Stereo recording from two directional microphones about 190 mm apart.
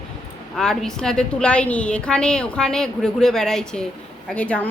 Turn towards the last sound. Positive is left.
turn(degrees=5)  # may be behind; listen again after turning